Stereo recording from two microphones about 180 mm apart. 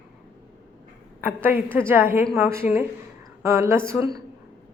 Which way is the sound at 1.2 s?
10° right (ahead or behind).